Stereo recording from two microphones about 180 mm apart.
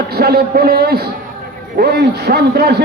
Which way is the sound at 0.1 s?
60° right (ahead or behind).